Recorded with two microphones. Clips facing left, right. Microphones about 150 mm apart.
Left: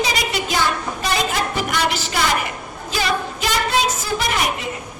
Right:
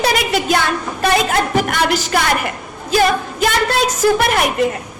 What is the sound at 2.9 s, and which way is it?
Music, 50° right (ahead or behind).